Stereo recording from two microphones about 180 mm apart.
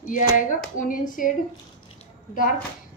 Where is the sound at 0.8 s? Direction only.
50° left (ahead or behind).